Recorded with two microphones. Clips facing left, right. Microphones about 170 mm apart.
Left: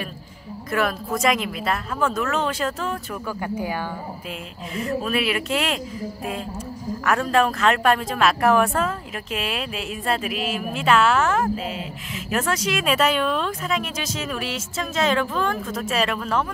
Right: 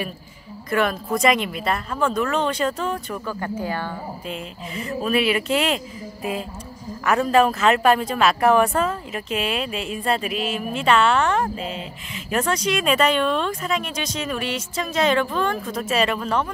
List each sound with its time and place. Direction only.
0.7 s a woman's voice: centre (ahead or behind)
4.7 s a woman's voice: centre (ahead or behind)
7.1 s a woman's voice: centre (ahead or behind)